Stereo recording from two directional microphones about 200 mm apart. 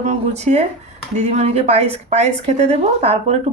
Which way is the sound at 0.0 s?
35° right (ahead or behind).